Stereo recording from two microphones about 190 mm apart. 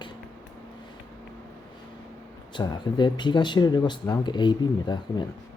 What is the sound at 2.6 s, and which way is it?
Speech, 25° left (ahead or behind).